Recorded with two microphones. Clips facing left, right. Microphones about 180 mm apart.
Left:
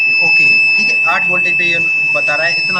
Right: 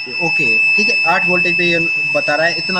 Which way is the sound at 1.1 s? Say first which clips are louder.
Right 4 dB; 40° right (ahead or behind).